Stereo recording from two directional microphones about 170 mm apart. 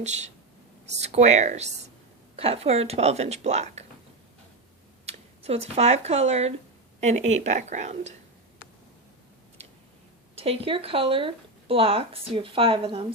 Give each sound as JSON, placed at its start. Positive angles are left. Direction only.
{"t": 0.9, "sound": "speech", "side_deg": -40}
{"t": 5.0, "sound": "speech", "side_deg": -40}
{"t": 10.3, "sound": "speech", "side_deg": -35}